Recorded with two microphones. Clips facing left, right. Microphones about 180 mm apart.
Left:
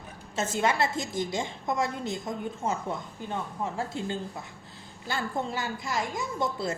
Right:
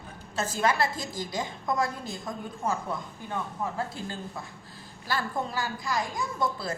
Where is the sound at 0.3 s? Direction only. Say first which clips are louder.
Even; 25° left (ahead or behind).